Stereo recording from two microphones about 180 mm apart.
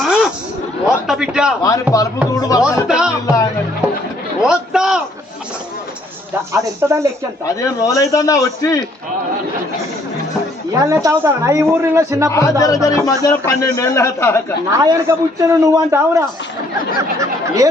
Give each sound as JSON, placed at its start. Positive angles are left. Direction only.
{"t": 0.0, "sound": "a sound", "side_deg": 0}
{"t": 1.6, "sound": "a man's voice", "side_deg": 20}
{"t": 2.8, "sound": "music", "side_deg": -5}
{"t": 3.2, "sound": "speech", "side_deg": 20}
{"t": 4.4, "sound": "a sound", "side_deg": -5}
{"t": 6.5, "sound": "a man's voice", "side_deg": -15}
{"t": 7.4, "sound": "a man's voice", "side_deg": 20}
{"t": 10.8, "sound": "a man's voice", "side_deg": -15}
{"t": 12.3, "sound": "a man's voice", "side_deg": 15}
{"t": 14.7, "sound": "a man's voice", "side_deg": -15}